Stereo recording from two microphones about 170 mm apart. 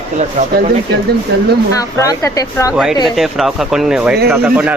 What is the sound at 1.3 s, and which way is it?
Speech, 75° right (ahead or behind).